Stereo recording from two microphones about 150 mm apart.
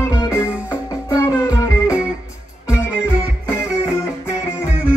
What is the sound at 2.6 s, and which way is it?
Music, 10° right (ahead or behind).